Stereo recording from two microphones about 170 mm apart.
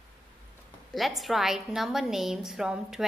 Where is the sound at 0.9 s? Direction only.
Centre (ahead or behind).